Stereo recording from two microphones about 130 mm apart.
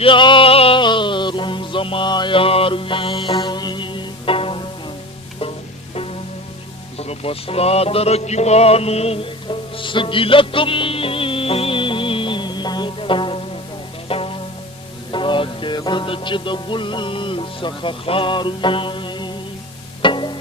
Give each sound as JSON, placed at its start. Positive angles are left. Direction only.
{"t": 0.0, "sound": "music", "side_deg": 40}
{"t": 3.3, "sound": "music", "side_deg": 35}
{"t": 7.0, "sound": "music", "side_deg": 50}